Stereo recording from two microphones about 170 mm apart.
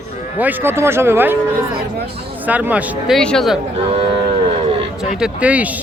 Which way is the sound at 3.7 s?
35° right (ahead or behind).